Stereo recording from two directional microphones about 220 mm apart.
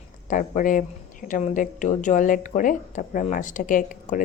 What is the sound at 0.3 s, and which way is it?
Speech, 35° left (ahead or behind).